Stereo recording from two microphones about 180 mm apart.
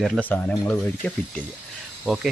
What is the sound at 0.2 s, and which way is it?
Speech, 10° left (ahead or behind).